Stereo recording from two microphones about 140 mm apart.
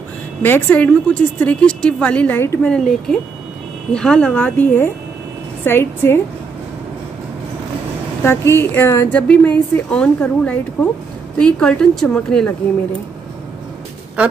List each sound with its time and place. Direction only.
0.4 s a woman's voice: 10° left (ahead or behind)
2.7 s a woman's voice: 5° left (ahead or behind)
8.2 s a woman's voice: 15° left (ahead or behind)
14.2 s speech: 10° right (ahead or behind)